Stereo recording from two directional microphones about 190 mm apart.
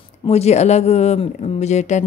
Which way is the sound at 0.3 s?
35° left (ahead or behind).